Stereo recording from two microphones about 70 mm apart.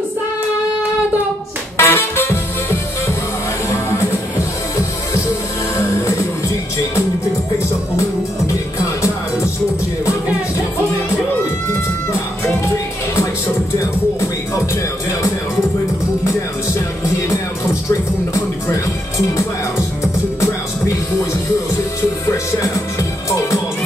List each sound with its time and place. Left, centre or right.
1.8 s music: left
13.7 s music: left
18.3 s music: left